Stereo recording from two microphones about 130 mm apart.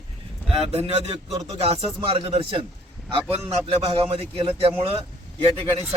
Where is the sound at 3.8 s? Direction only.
50° right (ahead or behind).